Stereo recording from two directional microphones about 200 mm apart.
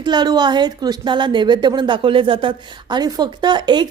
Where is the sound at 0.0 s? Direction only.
20° right (ahead or behind).